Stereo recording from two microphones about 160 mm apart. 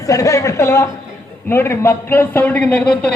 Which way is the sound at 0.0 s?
20° left (ahead or behind).